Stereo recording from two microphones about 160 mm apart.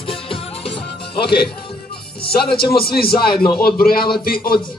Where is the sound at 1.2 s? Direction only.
80° left.